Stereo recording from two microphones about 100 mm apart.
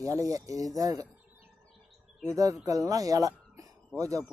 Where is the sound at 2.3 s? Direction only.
35° right (ahead or behind).